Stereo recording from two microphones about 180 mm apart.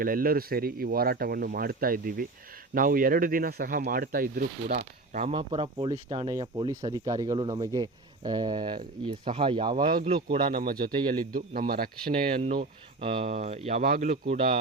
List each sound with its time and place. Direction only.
0.0 s speech: 55° right (ahead or behind)
5.3 s speech: 30° right (ahead or behind)
9.7 s speech: 50° right (ahead or behind)
10.1 s speech: 25° right (ahead or behind)
10.5 s speech: 55° right (ahead or behind)
13.0 s speech: 30° right (ahead or behind)
13.8 s speech: 45° right (ahead or behind)